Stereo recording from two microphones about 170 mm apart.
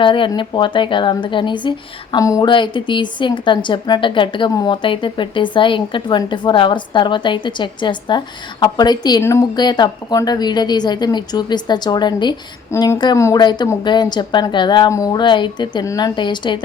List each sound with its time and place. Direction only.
0.0 s a woman's voice: 30° left (ahead or behind)